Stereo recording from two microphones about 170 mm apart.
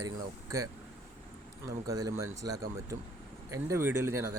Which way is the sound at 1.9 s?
20° right (ahead or behind).